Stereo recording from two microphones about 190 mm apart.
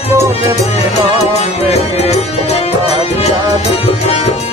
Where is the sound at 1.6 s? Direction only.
35° left (ahead or behind).